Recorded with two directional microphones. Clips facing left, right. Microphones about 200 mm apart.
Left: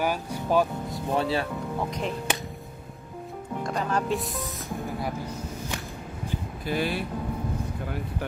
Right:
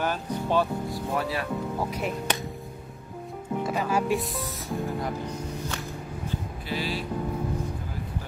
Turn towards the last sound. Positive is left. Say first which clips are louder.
# left 3 dB
turn(degrees=55)  # may be behind; listen again after turning